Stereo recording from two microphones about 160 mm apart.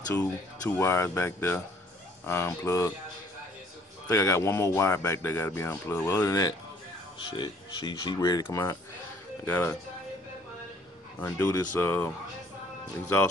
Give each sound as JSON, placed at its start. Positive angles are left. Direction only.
{"t": 0.1, "sound": "speech", "side_deg": 20}
{"t": 4.1, "sound": "speech", "side_deg": 15}
{"t": 11.1, "sound": "speech", "side_deg": 15}